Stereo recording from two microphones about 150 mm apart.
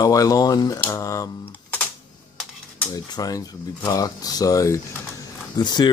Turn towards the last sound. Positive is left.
turn(degrees=30)  # may be behind; listen again after turning